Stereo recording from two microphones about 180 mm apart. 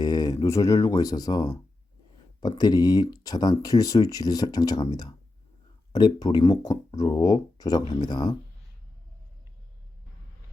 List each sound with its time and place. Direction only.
0.0 s speech: 20° left (ahead or behind)